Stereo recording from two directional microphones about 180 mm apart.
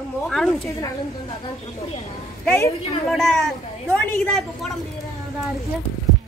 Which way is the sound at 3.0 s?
Centre (ahead or behind).